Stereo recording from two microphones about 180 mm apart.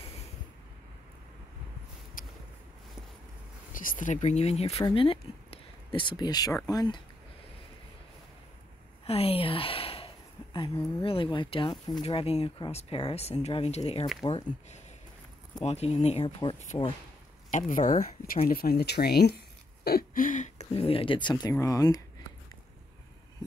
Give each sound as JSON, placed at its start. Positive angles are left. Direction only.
{"t": 2.2, "sound": "a sound", "side_deg": 50}
{"t": 3.7, "sound": "speech", "side_deg": 50}
{"t": 9.0, "sound": "speech", "side_deg": 35}
{"t": 15.6, "sound": "speech", "side_deg": 35}
{"t": 17.5, "sound": "speech", "side_deg": 45}